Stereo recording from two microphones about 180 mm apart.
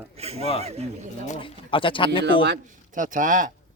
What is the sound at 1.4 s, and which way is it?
Speech, 30° left (ahead or behind).